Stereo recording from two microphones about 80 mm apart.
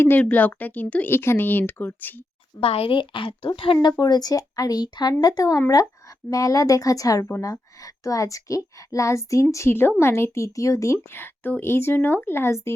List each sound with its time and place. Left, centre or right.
0.0 s speech: left
1.1 s speech: left
2.6 s a woman's voice: left